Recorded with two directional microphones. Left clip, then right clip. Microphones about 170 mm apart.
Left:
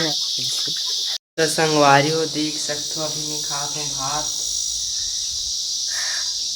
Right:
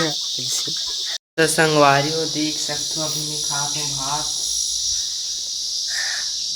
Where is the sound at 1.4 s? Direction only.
20° right (ahead or behind).